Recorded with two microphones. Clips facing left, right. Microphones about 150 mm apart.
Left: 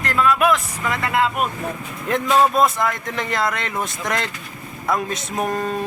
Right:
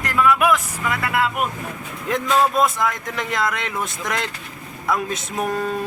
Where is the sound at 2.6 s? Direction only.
Centre (ahead or behind).